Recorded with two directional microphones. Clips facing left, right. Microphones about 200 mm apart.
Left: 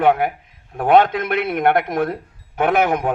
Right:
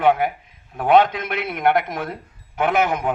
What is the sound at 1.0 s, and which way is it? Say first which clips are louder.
A man's voice: left 4 dB; 55° left (ahead or behind).